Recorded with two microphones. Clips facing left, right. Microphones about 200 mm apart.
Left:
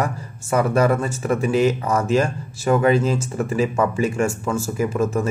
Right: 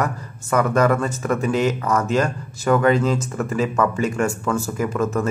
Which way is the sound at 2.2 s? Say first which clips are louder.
Even; 25° left (ahead or behind).